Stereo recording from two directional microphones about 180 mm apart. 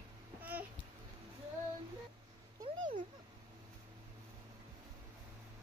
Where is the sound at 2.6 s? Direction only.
45° right (ahead or behind).